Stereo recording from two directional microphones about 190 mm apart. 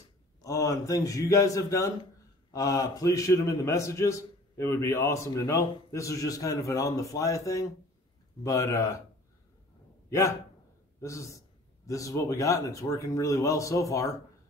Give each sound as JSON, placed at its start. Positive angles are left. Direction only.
{"t": 0.4, "sound": "a man's voice", "side_deg": 15}
{"t": 10.0, "sound": "a man's voice", "side_deg": 15}